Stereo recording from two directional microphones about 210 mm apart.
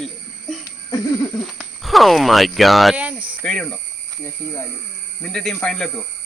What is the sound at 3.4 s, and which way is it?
Speech, 5° left (ahead or behind).